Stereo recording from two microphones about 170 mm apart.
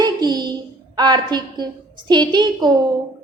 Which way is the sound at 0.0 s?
25° right (ahead or behind).